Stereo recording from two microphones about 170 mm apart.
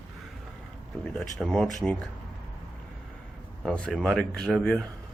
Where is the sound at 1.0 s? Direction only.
5° left (ahead or behind).